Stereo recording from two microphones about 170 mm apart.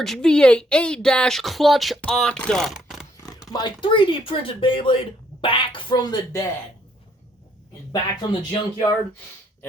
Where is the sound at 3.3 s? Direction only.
20° left (ahead or behind).